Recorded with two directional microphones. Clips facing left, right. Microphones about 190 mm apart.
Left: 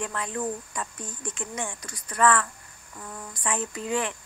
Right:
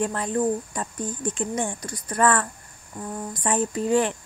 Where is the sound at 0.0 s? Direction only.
40° right (ahead or behind).